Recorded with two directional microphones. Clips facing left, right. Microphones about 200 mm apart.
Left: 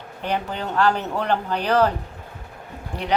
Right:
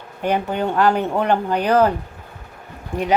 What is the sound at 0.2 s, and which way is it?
Speech, 50° right (ahead or behind).